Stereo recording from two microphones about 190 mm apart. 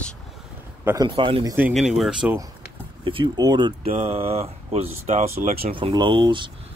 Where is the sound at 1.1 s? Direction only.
25° right (ahead or behind).